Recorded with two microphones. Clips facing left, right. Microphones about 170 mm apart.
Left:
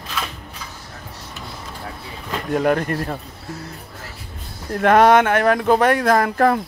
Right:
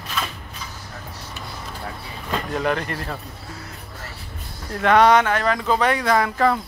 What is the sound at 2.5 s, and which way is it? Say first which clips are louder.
Speech: left 7 dB; 50° left (ahead or behind).